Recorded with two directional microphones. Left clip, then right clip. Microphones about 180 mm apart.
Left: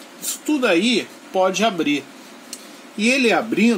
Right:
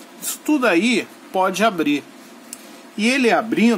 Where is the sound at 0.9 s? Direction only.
10° right (ahead or behind).